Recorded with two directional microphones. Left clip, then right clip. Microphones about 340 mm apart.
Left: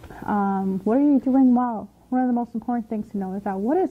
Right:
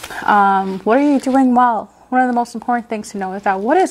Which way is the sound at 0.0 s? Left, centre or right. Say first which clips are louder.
Right 13 dB; centre.